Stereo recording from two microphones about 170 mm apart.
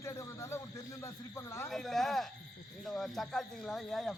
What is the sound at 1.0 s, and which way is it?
Snake, 15° left (ahead or behind).